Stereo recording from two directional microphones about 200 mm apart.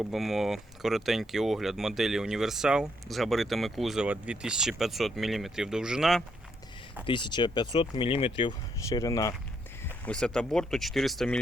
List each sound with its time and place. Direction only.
0.0 s speech: centre (ahead or behind)
7.0 s speech: 25° left (ahead or behind)
10.1 s speech: 5° left (ahead or behind)